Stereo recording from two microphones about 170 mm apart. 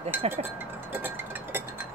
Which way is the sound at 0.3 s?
10° right (ahead or behind).